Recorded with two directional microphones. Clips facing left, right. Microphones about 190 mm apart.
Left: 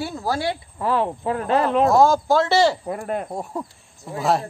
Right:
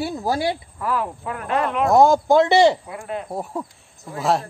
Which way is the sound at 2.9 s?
45° left (ahead or behind).